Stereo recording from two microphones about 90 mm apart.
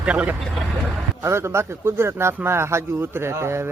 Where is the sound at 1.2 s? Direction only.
30° right (ahead or behind).